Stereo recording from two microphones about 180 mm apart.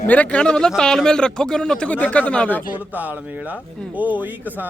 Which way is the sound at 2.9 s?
10° right (ahead or behind).